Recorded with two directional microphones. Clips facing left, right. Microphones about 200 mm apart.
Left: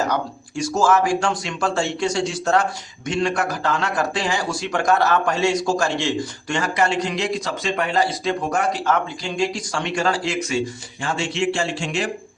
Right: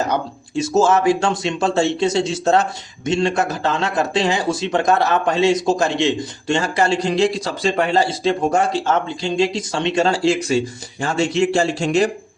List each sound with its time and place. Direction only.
0.1 s speech: 25° right (ahead or behind); by 12.1 s 40° right (ahead or behind)